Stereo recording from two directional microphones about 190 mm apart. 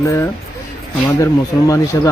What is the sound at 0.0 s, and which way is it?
Speech, 15° left (ahead or behind).